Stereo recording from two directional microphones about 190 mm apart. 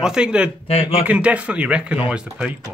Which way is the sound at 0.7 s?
35° left (ahead or behind).